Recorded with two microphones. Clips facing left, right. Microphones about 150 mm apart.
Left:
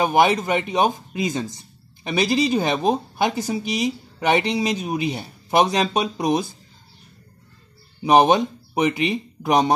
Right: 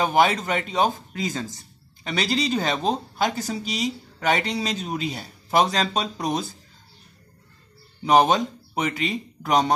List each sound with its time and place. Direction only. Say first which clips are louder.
0.0 s speech: left 3 dB; 10° left (ahead or behind)
8.0 s speech: left 3 dB; 15° left (ahead or behind)